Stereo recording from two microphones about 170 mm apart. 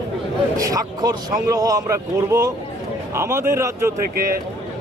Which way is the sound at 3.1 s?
15° right (ahead or behind).